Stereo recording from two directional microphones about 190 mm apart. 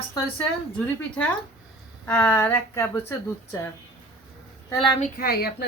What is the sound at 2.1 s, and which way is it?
Speech, 10° left (ahead or behind).